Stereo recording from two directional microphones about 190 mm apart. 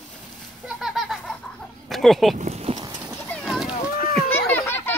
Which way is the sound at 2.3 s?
35° right (ahead or behind).